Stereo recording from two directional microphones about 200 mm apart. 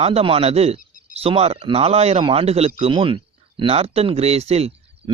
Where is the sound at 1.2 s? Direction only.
30° right (ahead or behind).